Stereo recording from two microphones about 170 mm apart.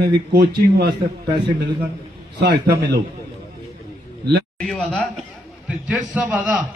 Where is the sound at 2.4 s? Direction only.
65° right (ahead or behind).